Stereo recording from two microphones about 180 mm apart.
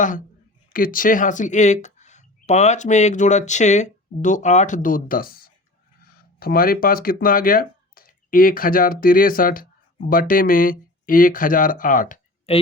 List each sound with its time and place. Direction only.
0.7 s speech: 50° left (ahead or behind)
12.5 s speech: 35° left (ahead or behind)